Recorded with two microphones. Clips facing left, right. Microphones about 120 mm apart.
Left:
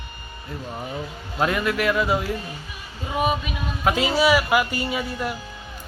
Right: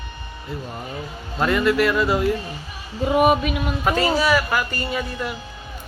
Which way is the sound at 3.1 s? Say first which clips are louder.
Right 7 dB; 55° right (ahead or behind).